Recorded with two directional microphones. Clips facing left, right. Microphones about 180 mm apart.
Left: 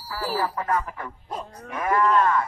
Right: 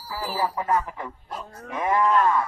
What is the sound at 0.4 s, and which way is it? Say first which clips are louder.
Speech: right 3 dB; 20° right (ahead or behind).